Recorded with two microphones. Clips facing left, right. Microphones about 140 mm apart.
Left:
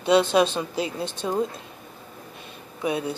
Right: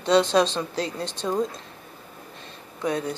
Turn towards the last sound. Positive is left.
turn(degrees=10)  # may be behind; listen again after turning